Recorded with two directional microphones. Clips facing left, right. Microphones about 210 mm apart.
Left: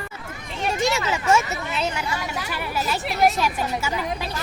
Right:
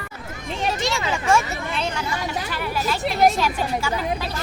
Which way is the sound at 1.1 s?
5° left (ahead or behind).